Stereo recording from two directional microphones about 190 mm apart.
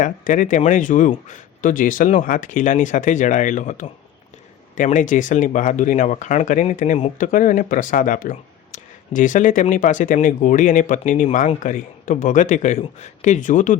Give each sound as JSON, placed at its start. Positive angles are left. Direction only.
{"t": 0.0, "sound": "a man's voice", "side_deg": 45}